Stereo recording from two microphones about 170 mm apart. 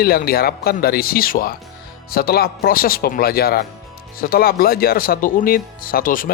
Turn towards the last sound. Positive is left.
turn(degrees=55)  # may be behind; listen again after turning